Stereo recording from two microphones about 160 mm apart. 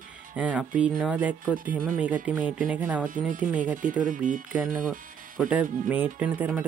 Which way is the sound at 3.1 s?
55° right (ahead or behind).